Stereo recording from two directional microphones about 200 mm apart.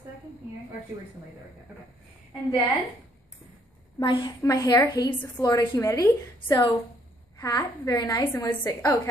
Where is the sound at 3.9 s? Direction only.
20° left (ahead or behind).